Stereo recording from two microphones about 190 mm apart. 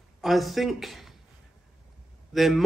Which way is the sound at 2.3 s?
Centre (ahead or behind).